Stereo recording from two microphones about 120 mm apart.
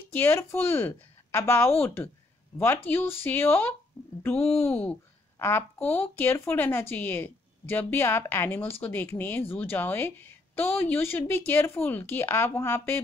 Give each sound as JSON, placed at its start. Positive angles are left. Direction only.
{"t": 0.1, "sound": "a woman's voice", "side_deg": 20}
{"t": 4.0, "sound": "a sound", "side_deg": 10}
{"t": 4.4, "sound": "speech", "side_deg": 55}
{"t": 5.4, "sound": "a woman's voice", "side_deg": 20}